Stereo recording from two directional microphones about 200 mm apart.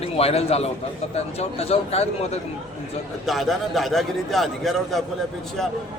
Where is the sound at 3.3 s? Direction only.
Centre (ahead or behind).